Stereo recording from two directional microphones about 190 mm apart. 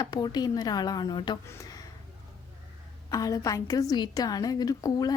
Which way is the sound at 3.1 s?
20° left (ahead or behind).